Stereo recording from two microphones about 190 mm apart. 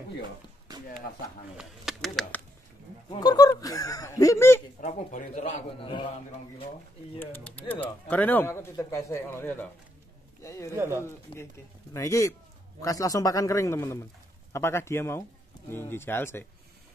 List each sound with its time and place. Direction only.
1.6 s speech: centre (ahead or behind)
3.1 s speech: 20° left (ahead or behind)
4.8 s speech: 40° left (ahead or behind)
5.8 s speech: 25° left (ahead or behind)
7.2 s speech: 10° left (ahead or behind)
10.7 s speech: 15° right (ahead or behind)
11.0 s speech: 15° left (ahead or behind)